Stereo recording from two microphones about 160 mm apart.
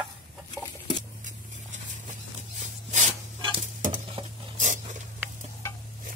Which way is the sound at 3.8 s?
55° right (ahead or behind).